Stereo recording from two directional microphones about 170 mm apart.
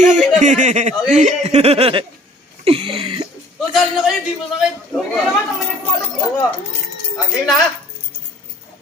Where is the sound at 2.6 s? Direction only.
35° right (ahead or behind).